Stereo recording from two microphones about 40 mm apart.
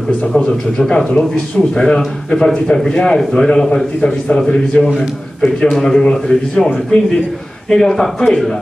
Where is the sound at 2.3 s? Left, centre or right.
Centre.